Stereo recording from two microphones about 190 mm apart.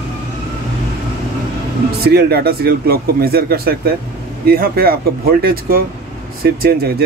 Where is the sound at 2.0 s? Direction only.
55° right (ahead or behind).